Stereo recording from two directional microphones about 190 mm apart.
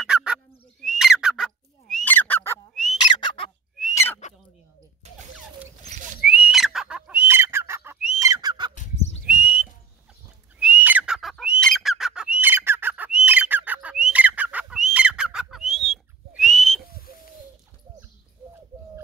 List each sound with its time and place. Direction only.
0.0 s bird: 5° right (ahead or behind)
3.1 s bird: 25° left (ahead or behind)
3.9 s owl: 15° left (ahead or behind)
6.2 s fowl: 5° right (ahead or behind)
8.2 s fowl: 20° right (ahead or behind)
9.2 s whistling: 5° right (ahead or behind)
10.6 s bird: 5° right (ahead or behind)